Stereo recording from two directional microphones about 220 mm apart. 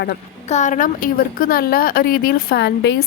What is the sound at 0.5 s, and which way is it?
A woman's voice, 35° left (ahead or behind).